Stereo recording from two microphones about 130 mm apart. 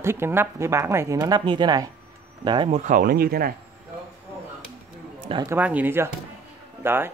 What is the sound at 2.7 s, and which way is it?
Speech, 70° right (ahead or behind).